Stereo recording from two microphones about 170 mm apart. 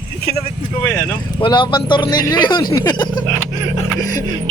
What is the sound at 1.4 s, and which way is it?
Speech, 30° left (ahead or behind).